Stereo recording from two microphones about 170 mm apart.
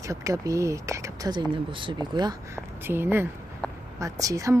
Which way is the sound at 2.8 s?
15° right (ahead or behind).